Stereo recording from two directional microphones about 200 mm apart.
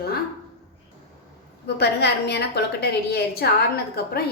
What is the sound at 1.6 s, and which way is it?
A woman's voice, 55° left (ahead or behind).